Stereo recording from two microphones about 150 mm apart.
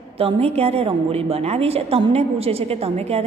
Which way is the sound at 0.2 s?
40° right (ahead or behind).